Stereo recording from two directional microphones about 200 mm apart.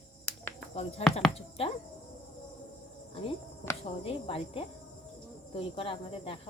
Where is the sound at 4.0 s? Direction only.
30° left (ahead or behind).